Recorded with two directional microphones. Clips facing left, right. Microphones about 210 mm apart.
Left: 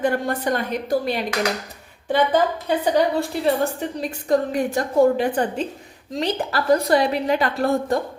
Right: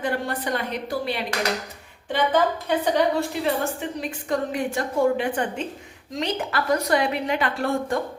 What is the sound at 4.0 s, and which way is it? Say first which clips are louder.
A woman's voice: left 7 dB; 40° left (ahead or behind).